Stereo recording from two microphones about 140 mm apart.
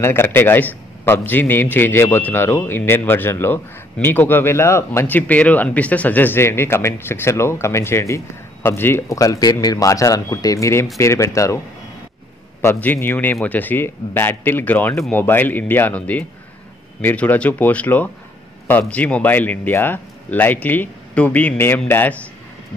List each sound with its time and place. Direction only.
0.0 s a man's voice: 15° left (ahead or behind)
12.6 s a man's voice: 15° left (ahead or behind)